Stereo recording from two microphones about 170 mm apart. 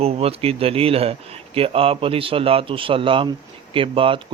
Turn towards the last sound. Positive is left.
turn(degrees=-30)  # may be behind; listen again after turning